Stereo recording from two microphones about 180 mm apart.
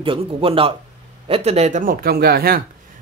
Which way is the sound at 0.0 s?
30° right (ahead or behind).